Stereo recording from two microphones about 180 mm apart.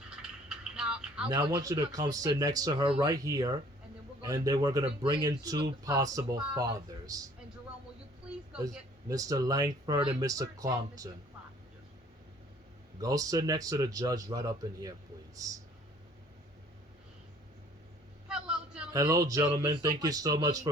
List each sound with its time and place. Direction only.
0.2 s a sound: 5° right (ahead or behind)
1.2 s speech: 20° right (ahead or behind)
8.6 s speech: 20° right (ahead or behind)
13.0 s speech: 20° right (ahead or behind)
18.3 s vehicle: 5° right (ahead or behind)
18.9 s speech: 20° right (ahead or behind)